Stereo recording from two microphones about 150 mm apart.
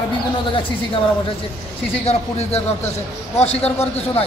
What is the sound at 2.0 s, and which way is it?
Speech, 45° left (ahead or behind).